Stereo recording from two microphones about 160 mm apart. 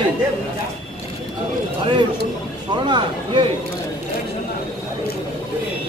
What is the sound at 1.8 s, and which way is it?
Speech, 30° right (ahead or behind).